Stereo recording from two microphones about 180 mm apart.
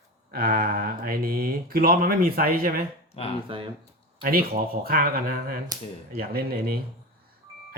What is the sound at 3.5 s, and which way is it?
Speech, 30° right (ahead or behind).